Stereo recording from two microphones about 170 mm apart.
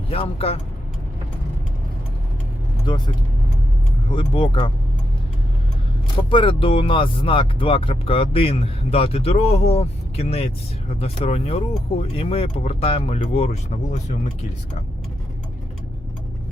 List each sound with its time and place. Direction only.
0.1 s speech: 35° left (ahead or behind)
2.8 s speech: 25° left (ahead or behind)
6.3 s speech: 30° left (ahead or behind)